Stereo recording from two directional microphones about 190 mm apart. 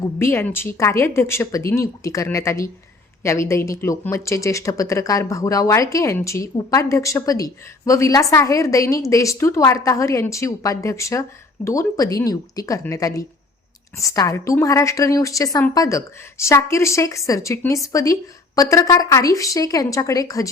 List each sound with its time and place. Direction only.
0.2 s speech: 10° left (ahead or behind)